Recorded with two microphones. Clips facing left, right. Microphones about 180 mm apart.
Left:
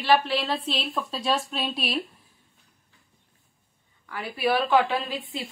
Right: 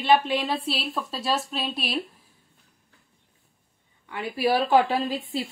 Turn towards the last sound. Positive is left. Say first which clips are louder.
# right 5 dB
turn(degrees=-35)  # may be behind; listen again after turning